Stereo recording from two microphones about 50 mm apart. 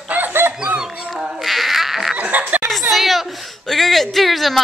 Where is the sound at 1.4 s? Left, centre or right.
Centre.